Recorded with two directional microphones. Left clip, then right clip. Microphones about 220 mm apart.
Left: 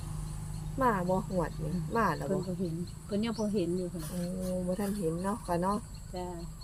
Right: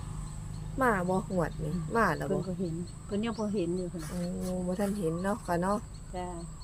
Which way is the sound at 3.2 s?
5° right (ahead or behind).